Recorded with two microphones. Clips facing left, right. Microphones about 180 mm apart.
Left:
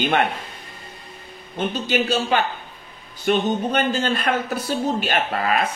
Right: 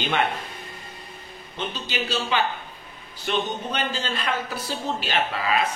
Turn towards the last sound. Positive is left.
turn(degrees=50)  # may be behind; listen again after turning